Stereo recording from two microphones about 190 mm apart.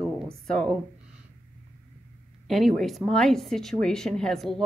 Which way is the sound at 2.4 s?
Centre (ahead or behind).